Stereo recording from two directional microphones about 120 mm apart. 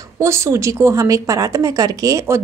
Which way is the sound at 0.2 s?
25° right (ahead or behind).